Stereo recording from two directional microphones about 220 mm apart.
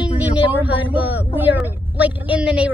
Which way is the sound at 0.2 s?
10° right (ahead or behind).